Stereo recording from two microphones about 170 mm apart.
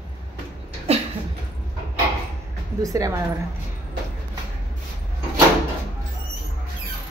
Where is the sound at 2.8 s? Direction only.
20° right (ahead or behind).